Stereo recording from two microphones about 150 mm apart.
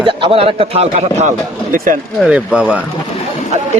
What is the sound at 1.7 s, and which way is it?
Speech, 65° right (ahead or behind).